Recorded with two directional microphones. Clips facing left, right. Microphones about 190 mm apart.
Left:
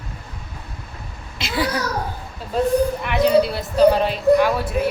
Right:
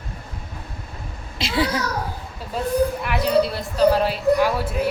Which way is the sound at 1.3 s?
30° right (ahead or behind).